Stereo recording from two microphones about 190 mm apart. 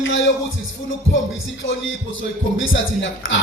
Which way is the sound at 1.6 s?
90° left.